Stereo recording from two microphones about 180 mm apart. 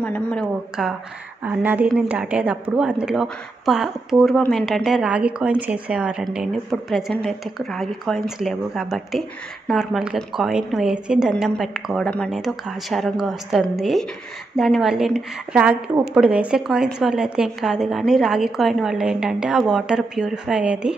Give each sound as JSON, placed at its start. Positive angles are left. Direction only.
{"t": 0.0, "sound": "speech", "side_deg": 5}